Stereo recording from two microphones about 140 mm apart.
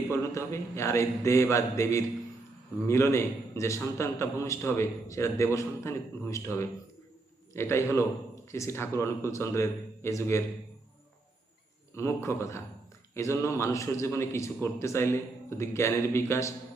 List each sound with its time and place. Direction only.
0.1 s a man's voice: 20° left (ahead or behind)
11.9 s a man's voice: 20° left (ahead or behind)